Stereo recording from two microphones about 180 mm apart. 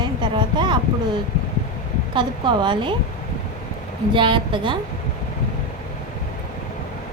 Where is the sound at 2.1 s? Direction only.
25° right (ahead or behind).